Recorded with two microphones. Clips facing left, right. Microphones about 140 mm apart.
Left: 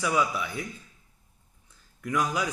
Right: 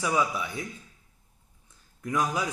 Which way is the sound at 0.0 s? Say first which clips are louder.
Even; 25° right (ahead or behind).